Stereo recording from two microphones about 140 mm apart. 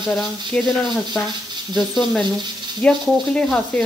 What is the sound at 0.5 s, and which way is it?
Speech, 5° left (ahead or behind).